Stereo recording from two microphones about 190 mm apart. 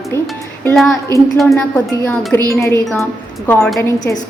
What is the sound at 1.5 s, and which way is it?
Speech, 15° left (ahead or behind).